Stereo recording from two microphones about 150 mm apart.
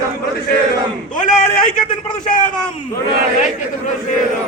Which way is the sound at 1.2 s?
65° left (ahead or behind).